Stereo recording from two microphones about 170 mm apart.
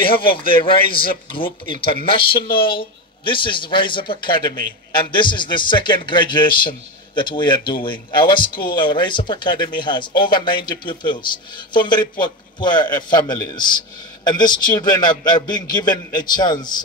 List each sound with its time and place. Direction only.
0.0 s speech: 30° left (ahead or behind)